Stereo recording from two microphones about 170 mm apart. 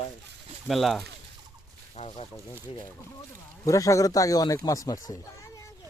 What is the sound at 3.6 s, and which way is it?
Speech, 20° left (ahead or behind).